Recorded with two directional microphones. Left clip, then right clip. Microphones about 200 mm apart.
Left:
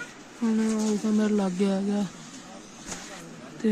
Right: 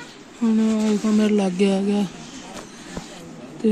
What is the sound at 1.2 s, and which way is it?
Speech, 30° left (ahead or behind).